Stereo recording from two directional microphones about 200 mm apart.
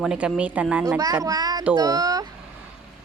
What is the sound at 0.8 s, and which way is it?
A woman's voice, 15° right (ahead or behind).